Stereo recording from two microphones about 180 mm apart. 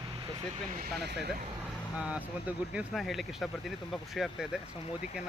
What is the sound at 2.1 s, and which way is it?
Speech, 5° right (ahead or behind).